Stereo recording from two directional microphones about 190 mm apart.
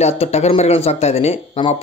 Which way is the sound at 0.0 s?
35° left (ahead or behind).